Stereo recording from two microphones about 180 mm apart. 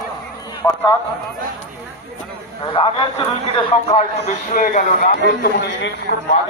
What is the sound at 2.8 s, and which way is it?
A man's voice, 30° left (ahead or behind).